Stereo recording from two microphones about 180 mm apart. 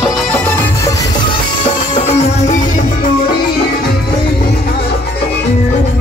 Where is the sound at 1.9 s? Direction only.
35° left (ahead or behind).